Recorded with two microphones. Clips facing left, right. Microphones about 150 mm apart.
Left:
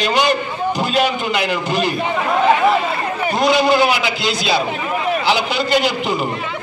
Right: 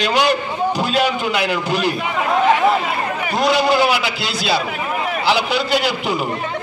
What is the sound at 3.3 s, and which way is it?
A man's voice, 5° right (ahead or behind).